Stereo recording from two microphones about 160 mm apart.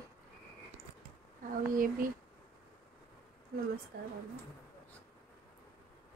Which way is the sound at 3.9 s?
75° right (ahead or behind).